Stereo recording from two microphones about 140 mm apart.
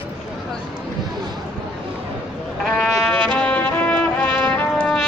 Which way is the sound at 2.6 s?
Centre (ahead or behind).